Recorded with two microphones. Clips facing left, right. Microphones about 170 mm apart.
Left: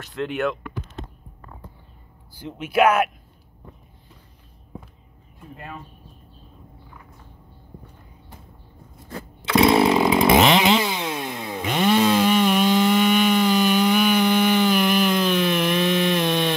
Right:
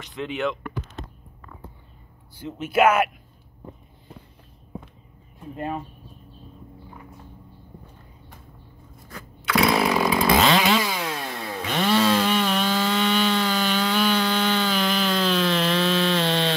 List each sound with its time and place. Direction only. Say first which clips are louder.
2.3 s speech: left 1 dB; centre (ahead or behind)
9.1 s chainsaw: left 4 dB; 25° left (ahead or behind)